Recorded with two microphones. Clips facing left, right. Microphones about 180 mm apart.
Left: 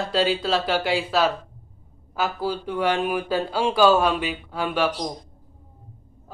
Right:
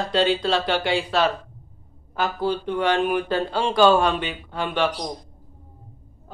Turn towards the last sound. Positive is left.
turn(degrees=5)  # may be behind; listen again after turning